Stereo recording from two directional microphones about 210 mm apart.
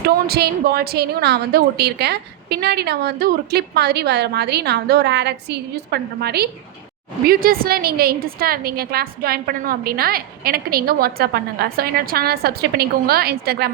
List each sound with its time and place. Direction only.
0.0 s a woman's voice: 50° right (ahead or behind)